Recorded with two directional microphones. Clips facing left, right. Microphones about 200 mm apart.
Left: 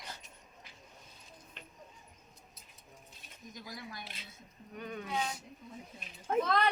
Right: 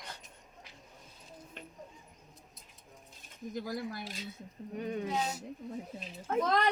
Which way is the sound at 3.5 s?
55° right (ahead or behind).